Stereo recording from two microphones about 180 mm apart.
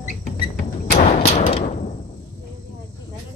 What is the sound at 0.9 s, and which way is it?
Gunshot, 40° left (ahead or behind).